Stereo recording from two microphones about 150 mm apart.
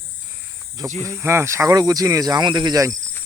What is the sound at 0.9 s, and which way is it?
Speech, 20° right (ahead or behind).